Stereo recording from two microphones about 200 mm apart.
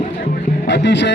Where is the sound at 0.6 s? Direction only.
60° left (ahead or behind).